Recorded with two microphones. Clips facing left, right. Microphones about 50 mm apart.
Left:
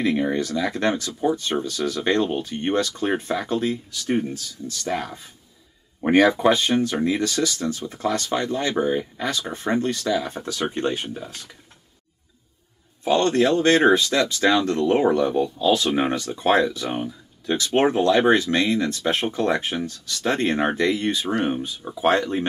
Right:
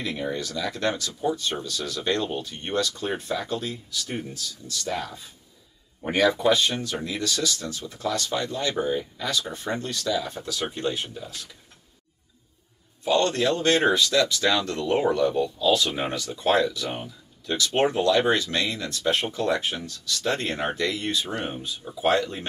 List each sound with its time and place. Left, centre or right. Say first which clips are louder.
0.0 s speech: left 7 dB; left
13.0 s speech: left 3 dB; left